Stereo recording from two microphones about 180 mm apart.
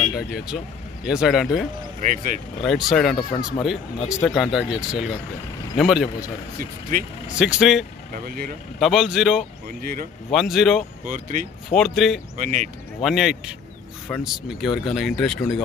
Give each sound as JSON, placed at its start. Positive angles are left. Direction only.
{"t": 1.0, "sound": "speech", "side_deg": -5}
{"t": 2.0, "sound": "speech", "side_deg": -45}
{"t": 2.6, "sound": "speech", "side_deg": 0}
{"t": 3.2, "sound": "speech", "side_deg": 25}
{"t": 4.2, "sound": "speech", "side_deg": 0}
{"t": 6.6, "sound": "speech", "side_deg": -50}
{"t": 7.3, "sound": "speech", "side_deg": -5}
{"t": 8.1, "sound": "speech", "side_deg": -50}
{"t": 8.7, "sound": "speech", "side_deg": 0}
{"t": 11.1, "sound": "speech", "side_deg": -45}
{"t": 11.7, "sound": "speech", "side_deg": 0}
{"t": 12.4, "sound": "speech", "side_deg": -45}
{"t": 13.0, "sound": "speech", "side_deg": 0}